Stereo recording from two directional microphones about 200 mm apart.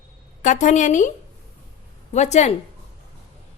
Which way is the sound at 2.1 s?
35° left (ahead or behind).